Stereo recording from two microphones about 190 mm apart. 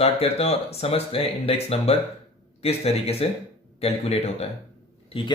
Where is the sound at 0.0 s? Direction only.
30° left (ahead or behind).